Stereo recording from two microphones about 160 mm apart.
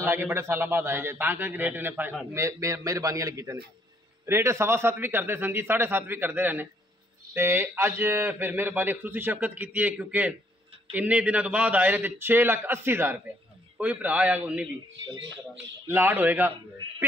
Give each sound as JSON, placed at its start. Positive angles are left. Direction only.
{"t": 0.0, "sound": "a man's voice", "side_deg": -15}